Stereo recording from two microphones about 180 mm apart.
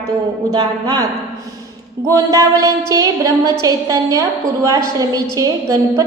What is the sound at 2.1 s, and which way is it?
A woman's voice, 15° right (ahead or behind).